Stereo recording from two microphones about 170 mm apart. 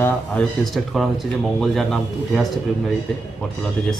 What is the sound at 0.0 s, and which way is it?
Speech, 5° left (ahead or behind).